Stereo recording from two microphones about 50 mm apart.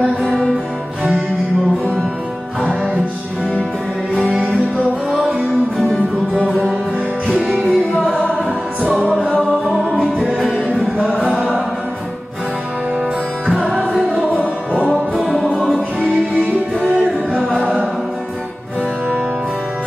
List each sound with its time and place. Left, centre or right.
4.1 s music: centre
5.8 s music: centre
7.3 s music: centre
8.8 s music: centre
13.5 s music: centre
16.3 s music: centre
17.3 s a capella: centre